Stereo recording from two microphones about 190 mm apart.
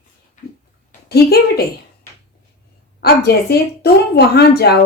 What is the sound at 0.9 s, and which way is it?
A woman's voice, 55° left (ahead or behind).